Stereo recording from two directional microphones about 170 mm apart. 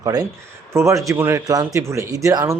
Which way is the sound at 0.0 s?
20° right (ahead or behind).